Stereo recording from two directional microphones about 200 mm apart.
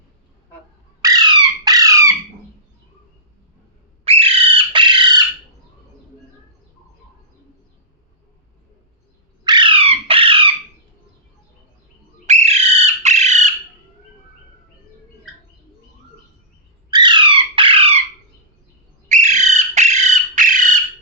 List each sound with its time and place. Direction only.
1.0 s squawk: 20° right (ahead or behind)
4.0 s bird: 30° right (ahead or behind)
9.4 s squawk: 20° right (ahead or behind)
12.2 s bird: 35° right (ahead or behind)
16.9 s squawk: 20° right (ahead or behind)
19.0 s bird: 35° right (ahead or behind)